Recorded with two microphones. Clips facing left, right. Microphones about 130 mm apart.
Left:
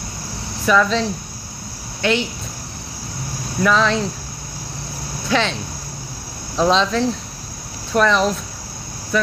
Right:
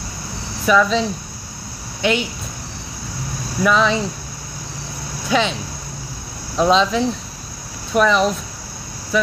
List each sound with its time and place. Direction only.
0.7 s speech: 5° right (ahead or behind)
2.0 s speech: 15° right (ahead or behind)
3.6 s speech: 5° right (ahead or behind)
5.3 s speech: 10° right (ahead or behind)